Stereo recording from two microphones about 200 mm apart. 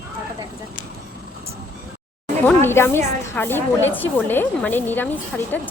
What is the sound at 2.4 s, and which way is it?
Speech, 10° left (ahead or behind).